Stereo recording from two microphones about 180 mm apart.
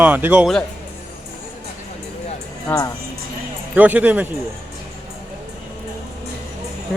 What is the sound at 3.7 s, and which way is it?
Speech, 10° right (ahead or behind).